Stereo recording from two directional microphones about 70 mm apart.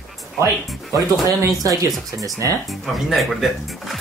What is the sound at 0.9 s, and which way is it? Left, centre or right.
Speech, right.